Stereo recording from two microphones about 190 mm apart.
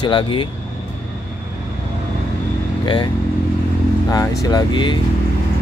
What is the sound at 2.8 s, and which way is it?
Speech, 25° left (ahead or behind).